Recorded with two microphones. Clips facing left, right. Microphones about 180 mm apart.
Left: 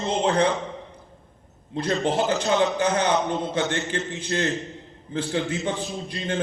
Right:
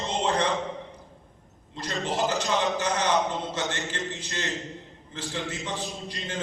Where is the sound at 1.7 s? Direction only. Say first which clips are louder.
Left 7 dB; 60° left (ahead or behind).